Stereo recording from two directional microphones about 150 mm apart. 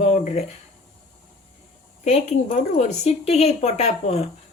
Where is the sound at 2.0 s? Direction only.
50° left (ahead or behind).